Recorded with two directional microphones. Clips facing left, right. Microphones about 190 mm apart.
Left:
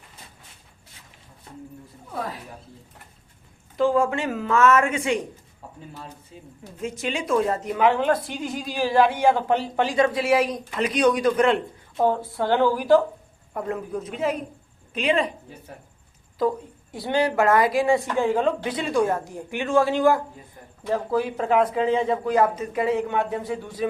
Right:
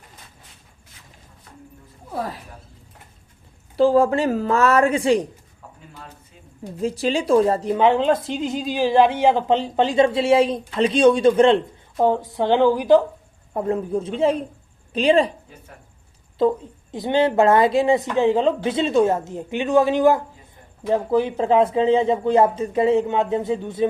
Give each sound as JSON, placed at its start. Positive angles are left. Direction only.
{"t": 3.8, "sound": "a woman's voice", "side_deg": -35}
{"t": 6.7, "sound": "a woman's voice", "side_deg": -35}
{"t": 16.4, "sound": "a woman's voice", "side_deg": -20}